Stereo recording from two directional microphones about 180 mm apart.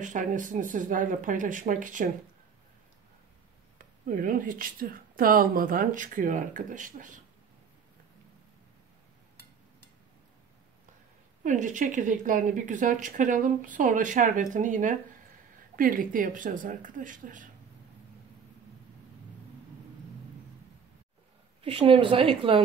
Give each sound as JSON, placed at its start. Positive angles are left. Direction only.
{"t": 0.0, "sound": "a woman's voice", "side_deg": -45}
{"t": 3.7, "sound": "a woman's voice", "side_deg": -50}
{"t": 11.4, "sound": "a woman's voice", "side_deg": -45}
{"t": 21.6, "sound": "a woman's voice", "side_deg": -30}